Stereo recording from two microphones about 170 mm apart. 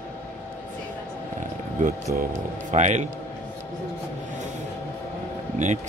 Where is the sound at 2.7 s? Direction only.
45° right (ahead or behind).